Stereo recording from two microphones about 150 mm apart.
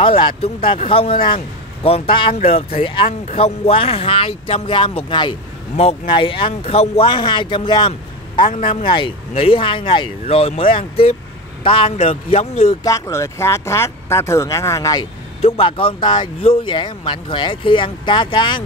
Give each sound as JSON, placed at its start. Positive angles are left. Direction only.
{"t": 0.0, "sound": "speech", "side_deg": 35}
{"t": 12.8, "sound": "speech", "side_deg": 20}
{"t": 15.4, "sound": "speech", "side_deg": 40}